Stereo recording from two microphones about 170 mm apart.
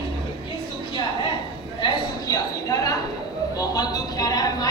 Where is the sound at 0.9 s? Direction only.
30° left (ahead or behind).